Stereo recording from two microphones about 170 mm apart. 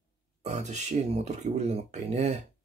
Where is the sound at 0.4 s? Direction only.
40° right (ahead or behind).